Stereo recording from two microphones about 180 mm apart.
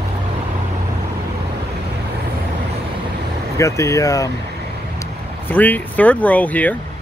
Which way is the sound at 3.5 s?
15° left (ahead or behind).